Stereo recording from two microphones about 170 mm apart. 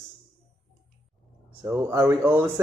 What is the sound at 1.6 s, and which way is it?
Speech, 15° right (ahead or behind).